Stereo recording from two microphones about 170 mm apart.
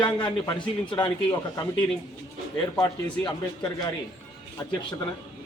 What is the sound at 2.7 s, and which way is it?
A man's voice, 25° left (ahead or behind).